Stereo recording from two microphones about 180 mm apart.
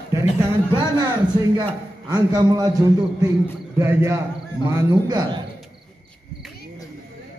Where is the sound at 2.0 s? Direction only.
20° right (ahead or behind).